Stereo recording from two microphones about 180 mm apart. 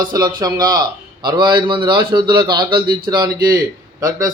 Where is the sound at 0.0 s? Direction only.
25° right (ahead or behind).